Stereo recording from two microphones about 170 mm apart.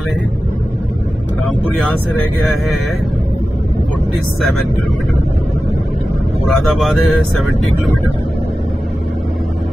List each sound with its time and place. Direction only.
6.4 s speech: centre (ahead or behind)